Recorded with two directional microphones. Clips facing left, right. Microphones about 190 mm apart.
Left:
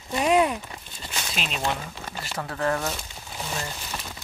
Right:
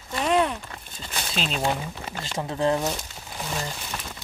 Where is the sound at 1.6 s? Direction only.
15° right (ahead or behind).